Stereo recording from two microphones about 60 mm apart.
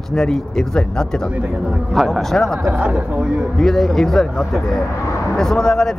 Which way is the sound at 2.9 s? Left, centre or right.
Right.